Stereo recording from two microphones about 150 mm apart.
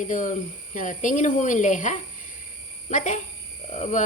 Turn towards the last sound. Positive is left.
turn(degrees=50)  # may be behind; listen again after turning